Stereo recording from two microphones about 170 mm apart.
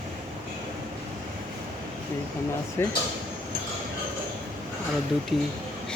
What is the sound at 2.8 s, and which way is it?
Speech, 15° left (ahead or behind).